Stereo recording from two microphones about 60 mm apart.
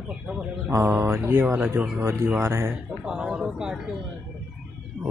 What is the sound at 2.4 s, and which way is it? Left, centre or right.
Speech, right.